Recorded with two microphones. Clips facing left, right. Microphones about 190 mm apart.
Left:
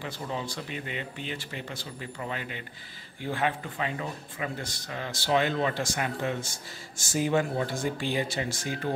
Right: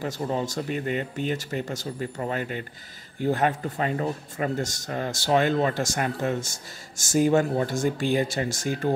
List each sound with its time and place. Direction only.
0.0 s speech: 45° right (ahead or behind)